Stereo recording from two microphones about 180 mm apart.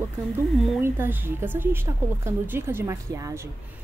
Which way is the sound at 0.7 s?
10° right (ahead or behind).